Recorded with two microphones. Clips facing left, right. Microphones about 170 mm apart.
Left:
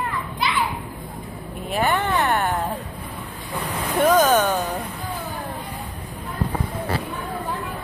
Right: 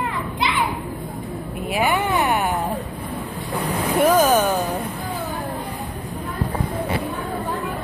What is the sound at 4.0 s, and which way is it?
Speech, 10° right (ahead or behind).